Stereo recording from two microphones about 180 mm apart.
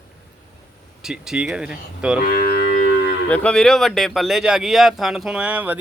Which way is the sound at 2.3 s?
60° left (ahead or behind).